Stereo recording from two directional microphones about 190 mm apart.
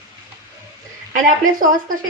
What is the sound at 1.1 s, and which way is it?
Speech, 45° right (ahead or behind).